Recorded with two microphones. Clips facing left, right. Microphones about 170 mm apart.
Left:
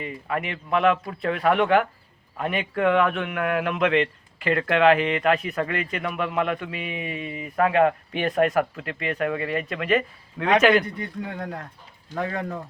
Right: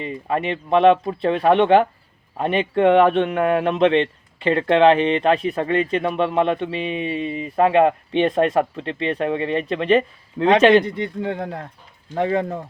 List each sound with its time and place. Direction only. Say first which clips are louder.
0.0 s a man's voice: right 5 dB; 30° right (ahead or behind)